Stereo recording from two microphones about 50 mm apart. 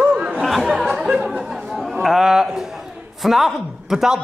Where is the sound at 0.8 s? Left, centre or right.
Centre.